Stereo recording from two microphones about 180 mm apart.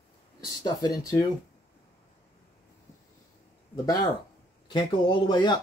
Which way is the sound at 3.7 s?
20° left (ahead or behind).